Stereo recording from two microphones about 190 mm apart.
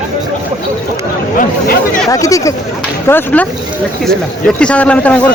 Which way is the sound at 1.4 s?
45° left (ahead or behind).